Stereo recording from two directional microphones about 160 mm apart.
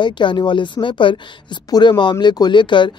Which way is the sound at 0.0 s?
30° left (ahead or behind).